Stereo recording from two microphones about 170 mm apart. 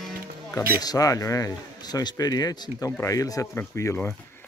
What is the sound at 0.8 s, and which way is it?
A man's voice, 20° left (ahead or behind).